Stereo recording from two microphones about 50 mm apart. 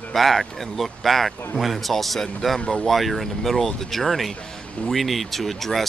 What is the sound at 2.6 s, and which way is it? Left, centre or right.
Speech, centre.